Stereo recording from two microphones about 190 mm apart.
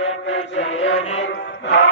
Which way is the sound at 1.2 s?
70° left (ahead or behind).